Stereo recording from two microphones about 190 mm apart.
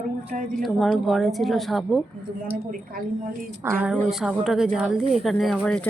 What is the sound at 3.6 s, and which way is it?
Speech, 10° right (ahead or behind).